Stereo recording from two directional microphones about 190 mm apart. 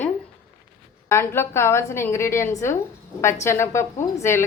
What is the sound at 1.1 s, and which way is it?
A woman's voice, 15° left (ahead or behind).